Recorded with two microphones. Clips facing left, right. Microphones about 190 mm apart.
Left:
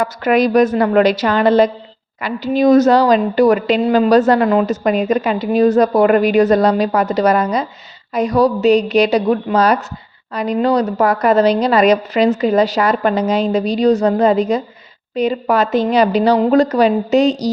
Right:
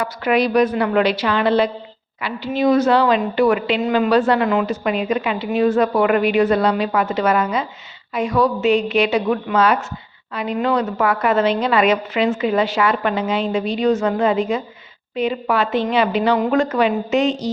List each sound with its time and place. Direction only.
0.0 s a woman's voice: 45° left (ahead or behind)